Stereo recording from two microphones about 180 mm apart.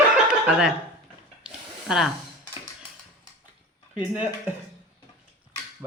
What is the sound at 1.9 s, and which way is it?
Speech, 5° right (ahead or behind).